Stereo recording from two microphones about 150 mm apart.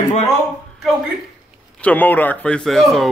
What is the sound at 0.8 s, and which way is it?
Speech, centre (ahead or behind).